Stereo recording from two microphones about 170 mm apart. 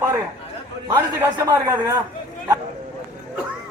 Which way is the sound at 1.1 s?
20° right (ahead or behind).